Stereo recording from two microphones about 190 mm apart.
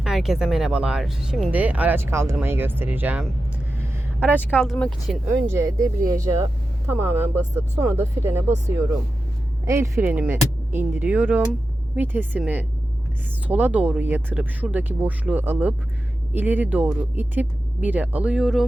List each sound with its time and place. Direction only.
0.0 s speech: centre (ahead or behind)
4.5 s speech: 5° left (ahead or behind)
5.5 s speech: 15° right (ahead or behind)